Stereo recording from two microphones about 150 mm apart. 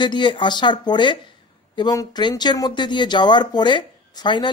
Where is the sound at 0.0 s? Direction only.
30° left (ahead or behind).